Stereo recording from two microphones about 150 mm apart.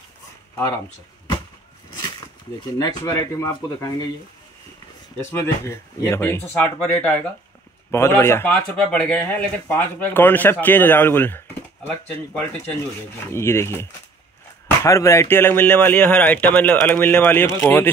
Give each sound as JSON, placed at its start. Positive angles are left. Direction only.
{"t": 2.0, "sound": "a sound", "side_deg": 30}
{"t": 2.8, "sound": "speech", "side_deg": 25}
{"t": 5.1, "sound": "speech", "side_deg": 15}
{"t": 13.3, "sound": "speech", "side_deg": 15}